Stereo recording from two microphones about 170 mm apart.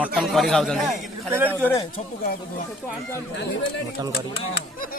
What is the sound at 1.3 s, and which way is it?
Speech, 10° right (ahead or behind).